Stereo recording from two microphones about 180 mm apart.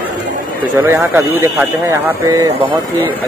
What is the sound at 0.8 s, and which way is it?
Speech, 15° right (ahead or behind).